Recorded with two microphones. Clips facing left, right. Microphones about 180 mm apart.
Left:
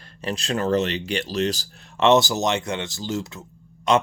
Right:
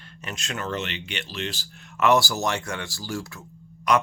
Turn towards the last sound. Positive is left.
turn(degrees=25)  # may be behind; listen again after turning